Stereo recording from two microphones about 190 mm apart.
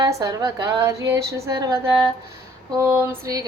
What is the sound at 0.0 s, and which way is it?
A woman's voice, 15° right (ahead or behind).